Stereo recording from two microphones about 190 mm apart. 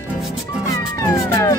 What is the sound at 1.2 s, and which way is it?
Police car, 15° left (ahead or behind).